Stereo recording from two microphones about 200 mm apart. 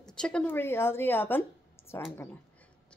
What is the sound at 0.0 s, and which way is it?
A woman's voice, 5° left (ahead or behind).